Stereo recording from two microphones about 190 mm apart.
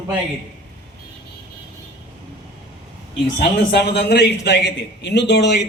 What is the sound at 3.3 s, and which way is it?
A man's voice, 60° left (ahead or behind).